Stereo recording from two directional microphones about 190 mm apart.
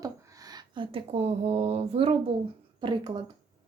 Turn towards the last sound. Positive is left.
turn(degrees=-25)  # may be behind; listen again after turning